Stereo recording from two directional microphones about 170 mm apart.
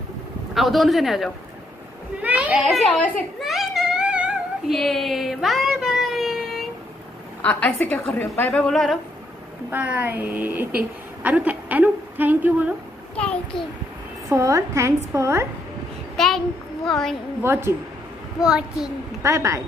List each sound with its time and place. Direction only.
0.6 s speech: centre (ahead or behind)
2.2 s a sound: 10° right (ahead or behind)
7.4 s a woman's voice: 10° left (ahead or behind)
8.6 s speech: centre (ahead or behind)
9.7 s a woman's voice: 10° right (ahead or behind)
13.1 s a child's voice: 5° left (ahead or behind)
14.3 s a woman's voice: 20° right (ahead or behind)
16.2 s a child's voice: centre (ahead or behind)
17.4 s a woman's voice: 15° right (ahead or behind)
19.2 s a woman's voice: 20° right (ahead or behind)